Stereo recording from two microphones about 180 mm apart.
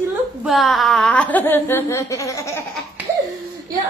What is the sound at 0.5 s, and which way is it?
Speech, centre (ahead or behind).